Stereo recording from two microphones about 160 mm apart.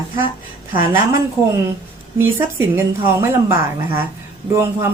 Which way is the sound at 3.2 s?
15° right (ahead or behind).